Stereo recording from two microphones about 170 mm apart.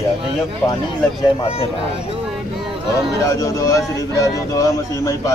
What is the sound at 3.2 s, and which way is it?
Speech, 20° left (ahead or behind).